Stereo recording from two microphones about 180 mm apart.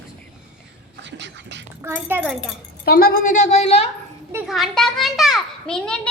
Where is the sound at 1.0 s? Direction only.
80° right.